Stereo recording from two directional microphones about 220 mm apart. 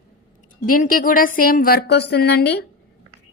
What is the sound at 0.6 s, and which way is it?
A woman's voice, 40° left (ahead or behind).